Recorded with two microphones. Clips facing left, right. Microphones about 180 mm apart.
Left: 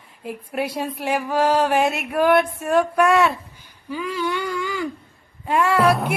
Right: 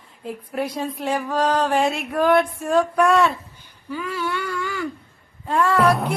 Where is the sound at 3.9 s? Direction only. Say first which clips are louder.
Left 2 dB; 15° left (ahead or behind).